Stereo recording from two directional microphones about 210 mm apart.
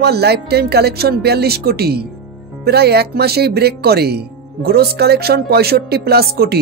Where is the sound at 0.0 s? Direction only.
50° right (ahead or behind).